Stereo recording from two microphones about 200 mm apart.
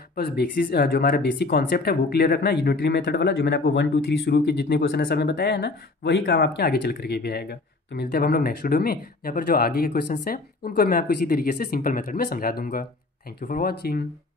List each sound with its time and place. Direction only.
0.1 s speech: 50° left (ahead or behind)